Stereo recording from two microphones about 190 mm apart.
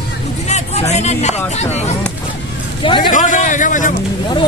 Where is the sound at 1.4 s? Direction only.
35° left (ahead or behind).